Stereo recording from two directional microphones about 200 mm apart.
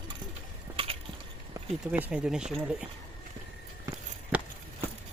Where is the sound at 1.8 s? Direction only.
5° right (ahead or behind).